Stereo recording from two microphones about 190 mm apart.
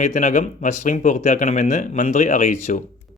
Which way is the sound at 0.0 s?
40° left (ahead or behind).